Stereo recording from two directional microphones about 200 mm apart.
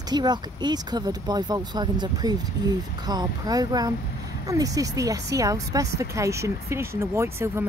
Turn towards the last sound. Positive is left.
turn(degrees=-15)  # may be behind; listen again after turning